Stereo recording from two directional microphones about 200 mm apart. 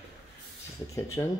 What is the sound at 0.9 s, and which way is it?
Speech, 15° left (ahead or behind).